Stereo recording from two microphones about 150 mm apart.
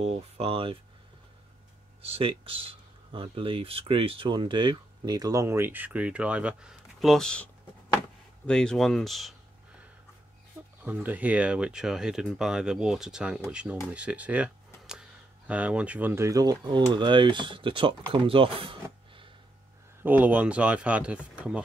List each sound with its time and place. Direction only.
0.0 s speech: 40° right (ahead or behind)
2.0 s speech: 40° right (ahead or behind); by 7.4 s 5° left (ahead or behind)
8.5 s speech: 5° left (ahead or behind)
10.8 s speech: 10° right (ahead or behind); by 19.3 s 35° right (ahead or behind)
20.0 s speech: 10° right (ahead or behind)